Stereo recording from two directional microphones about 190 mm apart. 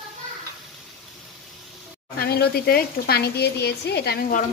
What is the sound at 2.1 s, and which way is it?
Speech, 55° left (ahead or behind).